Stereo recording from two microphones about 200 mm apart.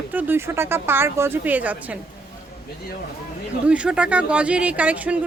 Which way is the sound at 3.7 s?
5° right (ahead or behind).